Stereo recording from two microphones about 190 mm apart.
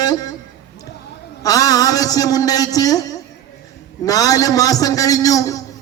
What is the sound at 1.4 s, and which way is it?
A man's voice, 20° left (ahead or behind).